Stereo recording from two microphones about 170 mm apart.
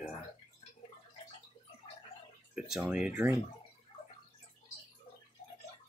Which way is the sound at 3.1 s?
15° right (ahead or behind).